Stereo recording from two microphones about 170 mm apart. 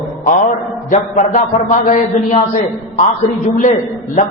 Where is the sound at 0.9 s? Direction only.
45° left (ahead or behind).